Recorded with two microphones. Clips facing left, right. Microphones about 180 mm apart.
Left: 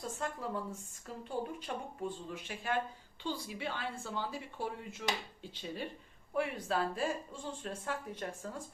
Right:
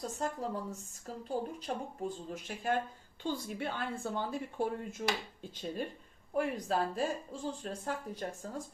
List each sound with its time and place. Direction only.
0.0 s speech: 40° right (ahead or behind)